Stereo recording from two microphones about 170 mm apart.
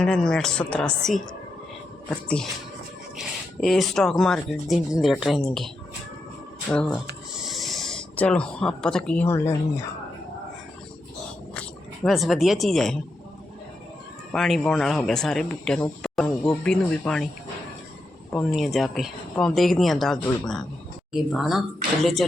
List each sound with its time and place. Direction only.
0.0 s speech: 5° left (ahead or behind)
11.5 s speech: 5° left (ahead or behind)
14.3 s speech: centre (ahead or behind)
18.3 s speech: 5° left (ahead or behind)